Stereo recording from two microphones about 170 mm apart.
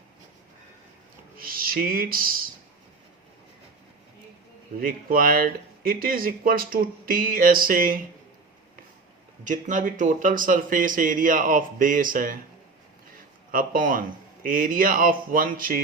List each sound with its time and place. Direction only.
1.4 s music: 60° right (ahead or behind)
4.8 s speech: 55° right (ahead or behind)
9.4 s speech: 45° right (ahead or behind)
13.5 s speech: 55° right (ahead or behind)